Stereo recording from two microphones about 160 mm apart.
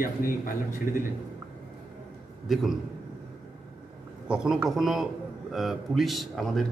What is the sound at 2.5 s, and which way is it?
Speech, centre (ahead or behind).